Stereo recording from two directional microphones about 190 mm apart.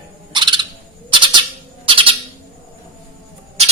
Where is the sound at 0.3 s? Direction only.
25° right (ahead or behind).